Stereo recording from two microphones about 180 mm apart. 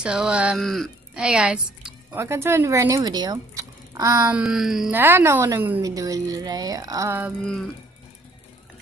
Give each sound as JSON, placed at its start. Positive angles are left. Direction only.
{"t": 0.0, "sound": "speech", "side_deg": -5}
{"t": 4.4, "sound": "speech", "side_deg": 0}